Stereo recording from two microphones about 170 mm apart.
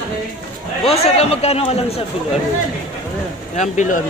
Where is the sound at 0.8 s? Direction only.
35° left (ahead or behind).